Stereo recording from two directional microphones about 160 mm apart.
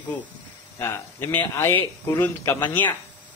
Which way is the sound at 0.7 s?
15° left (ahead or behind).